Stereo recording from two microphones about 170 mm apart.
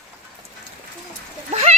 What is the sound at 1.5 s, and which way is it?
Splash, 40° right (ahead or behind).